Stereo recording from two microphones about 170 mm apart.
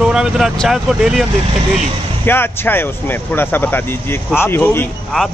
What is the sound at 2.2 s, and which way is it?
Speech, 10° left (ahead or behind).